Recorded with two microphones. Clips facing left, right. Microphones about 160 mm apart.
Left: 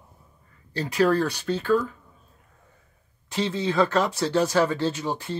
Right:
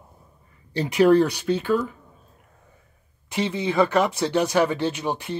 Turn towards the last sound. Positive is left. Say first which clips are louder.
# right 1 dB
turn(degrees=-15)  # may be behind; listen again after turning